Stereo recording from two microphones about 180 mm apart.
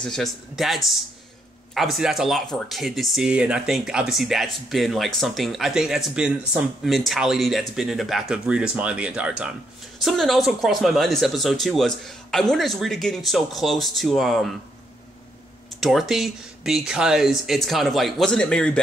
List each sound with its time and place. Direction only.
0.0 s speech: centre (ahead or behind)
15.8 s speech: centre (ahead or behind)